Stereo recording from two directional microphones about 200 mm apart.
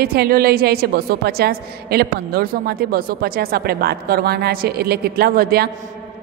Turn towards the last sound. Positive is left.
turn(degrees=-50)  # may be behind; listen again after turning